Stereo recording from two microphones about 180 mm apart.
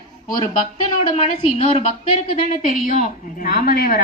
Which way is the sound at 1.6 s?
40° left (ahead or behind).